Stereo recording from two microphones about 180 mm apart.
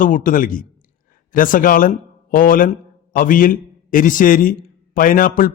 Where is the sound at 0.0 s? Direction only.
50° left (ahead or behind).